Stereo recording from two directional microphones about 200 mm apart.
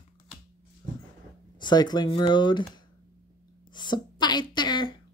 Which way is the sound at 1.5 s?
20° left (ahead or behind).